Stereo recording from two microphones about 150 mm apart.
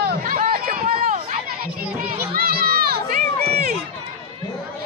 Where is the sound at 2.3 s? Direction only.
85° right.